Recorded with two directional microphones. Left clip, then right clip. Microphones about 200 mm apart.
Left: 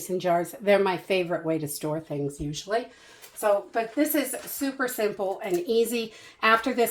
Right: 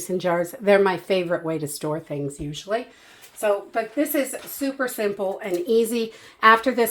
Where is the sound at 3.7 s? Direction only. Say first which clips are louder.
Right 2 dB; 35° right (ahead or behind).